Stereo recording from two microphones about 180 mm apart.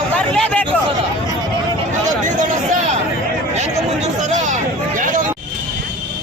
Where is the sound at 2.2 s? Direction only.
45° right (ahead or behind).